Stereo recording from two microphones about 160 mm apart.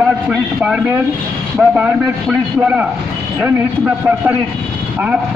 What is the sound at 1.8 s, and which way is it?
A man's voice, 10° right (ahead or behind).